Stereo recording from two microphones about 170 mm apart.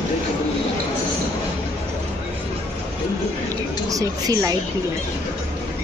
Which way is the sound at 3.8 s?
20° right (ahead or behind).